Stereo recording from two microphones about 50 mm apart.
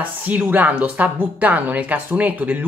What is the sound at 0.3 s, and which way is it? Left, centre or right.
Speech, right.